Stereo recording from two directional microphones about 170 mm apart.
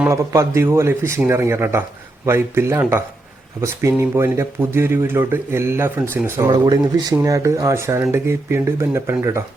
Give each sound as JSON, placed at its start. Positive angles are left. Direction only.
{"t": 0.1, "sound": "speech", "side_deg": -15}